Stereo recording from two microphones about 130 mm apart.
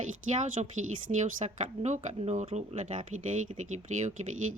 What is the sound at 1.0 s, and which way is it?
Speech, 65° right (ahead or behind).